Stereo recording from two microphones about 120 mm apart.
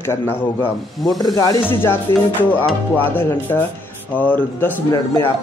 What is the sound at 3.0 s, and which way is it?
A man's voice, 20° left (ahead or behind).